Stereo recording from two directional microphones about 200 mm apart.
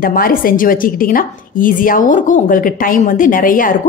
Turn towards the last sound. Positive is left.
turn(degrees=45)  # may be behind; listen again after turning